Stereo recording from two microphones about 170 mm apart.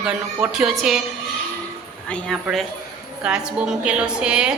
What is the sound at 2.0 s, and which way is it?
A woman's voice, 5° left (ahead or behind).